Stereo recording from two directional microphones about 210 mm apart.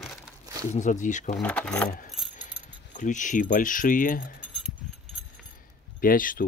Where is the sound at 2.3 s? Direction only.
35° left (ahead or behind).